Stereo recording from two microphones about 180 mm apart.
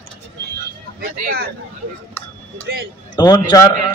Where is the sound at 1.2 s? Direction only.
55° right (ahead or behind).